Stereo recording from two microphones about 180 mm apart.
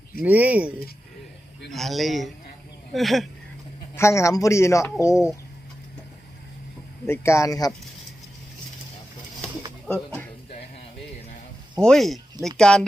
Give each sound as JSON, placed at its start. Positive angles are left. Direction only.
{"t": 0.2, "sound": "speech", "side_deg": -10}
{"t": 1.7, "sound": "speech", "side_deg": 0}
{"t": 3.9, "sound": "speech", "side_deg": 15}
{"t": 7.1, "sound": "speech", "side_deg": 15}
{"t": 11.8, "sound": "speech", "side_deg": 0}